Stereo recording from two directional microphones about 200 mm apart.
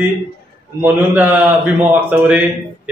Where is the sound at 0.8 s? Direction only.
10° right (ahead or behind).